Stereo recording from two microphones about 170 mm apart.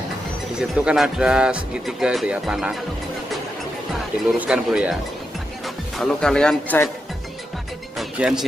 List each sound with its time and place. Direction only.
0.6 s speech: 5° right (ahead or behind)
4.3 s speech: 5° right (ahead or behind)
5.9 s speech: 5° left (ahead or behind)
8.0 s speech: 5° right (ahead or behind)